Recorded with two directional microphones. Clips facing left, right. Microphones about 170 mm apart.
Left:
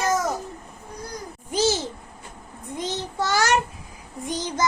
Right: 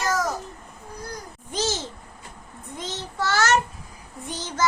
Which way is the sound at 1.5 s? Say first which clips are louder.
Left 5 dB; 10° left (ahead or behind).